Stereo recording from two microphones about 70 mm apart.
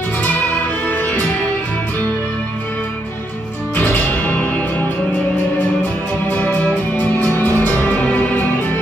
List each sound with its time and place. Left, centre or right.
0.2 s music: left
3.7 s music: left
6.3 s music: left